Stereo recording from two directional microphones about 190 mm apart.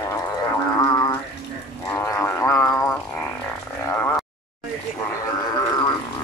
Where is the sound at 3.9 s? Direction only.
10° left (ahead or behind).